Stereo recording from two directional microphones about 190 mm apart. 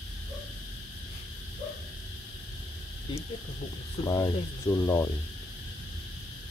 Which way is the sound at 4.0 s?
20° left (ahead or behind).